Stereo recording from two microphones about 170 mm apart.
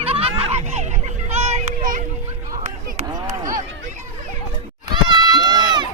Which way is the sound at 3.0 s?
20° right (ahead or behind).